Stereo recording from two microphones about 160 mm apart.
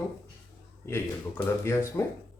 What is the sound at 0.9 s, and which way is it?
Speech, 15° left (ahead or behind).